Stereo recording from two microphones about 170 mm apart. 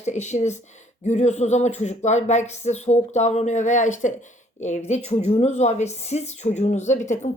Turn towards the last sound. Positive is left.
turn(degrees=45)  # may be behind; listen again after turning